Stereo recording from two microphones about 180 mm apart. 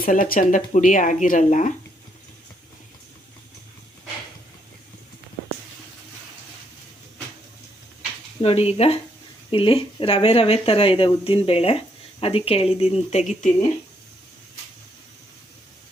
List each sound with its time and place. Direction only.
0.0 s speech: 50° left (ahead or behind)
8.4 s speech: 35° left (ahead or behind)